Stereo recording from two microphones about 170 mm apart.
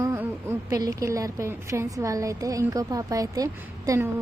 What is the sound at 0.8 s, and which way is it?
A woman's voice, 20° right (ahead or behind).